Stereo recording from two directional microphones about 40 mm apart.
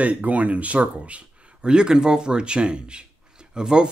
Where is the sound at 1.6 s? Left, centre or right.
Centre.